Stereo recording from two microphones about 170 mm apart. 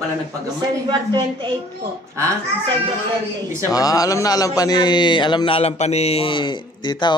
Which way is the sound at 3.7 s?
20° left (ahead or behind).